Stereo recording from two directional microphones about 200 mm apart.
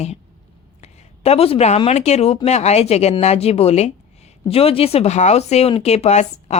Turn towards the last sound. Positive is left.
turn(degrees=35)  # may be behind; listen again after turning